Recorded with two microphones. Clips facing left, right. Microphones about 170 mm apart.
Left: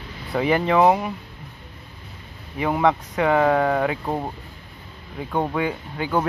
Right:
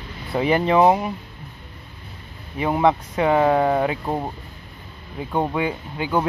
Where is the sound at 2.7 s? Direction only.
20° right (ahead or behind).